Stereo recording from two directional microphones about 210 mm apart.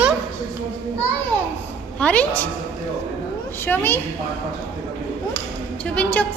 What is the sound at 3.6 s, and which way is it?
Speech, 10° left (ahead or behind).